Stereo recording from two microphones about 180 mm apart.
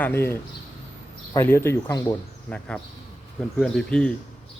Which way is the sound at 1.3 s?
15° left (ahead or behind).